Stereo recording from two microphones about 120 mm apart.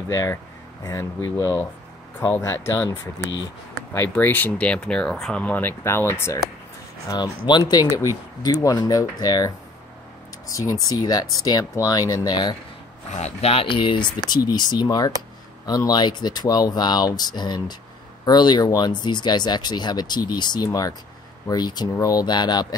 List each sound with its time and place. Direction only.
0.1 s speech: 25° left (ahead or behind)
4.1 s speech: 15° left (ahead or behind)
7.1 s speech: 35° left (ahead or behind)
10.5 s speech: 30° left (ahead or behind)
13.1 s speech: 65° left (ahead or behind); by 22.8 s 35° left (ahead or behind)